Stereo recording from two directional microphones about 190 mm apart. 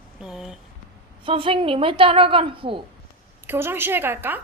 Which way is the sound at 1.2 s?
30° right (ahead or behind).